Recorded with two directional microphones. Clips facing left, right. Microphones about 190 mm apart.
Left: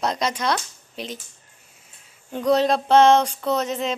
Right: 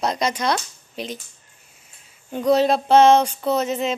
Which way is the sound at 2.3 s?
5° right (ahead or behind).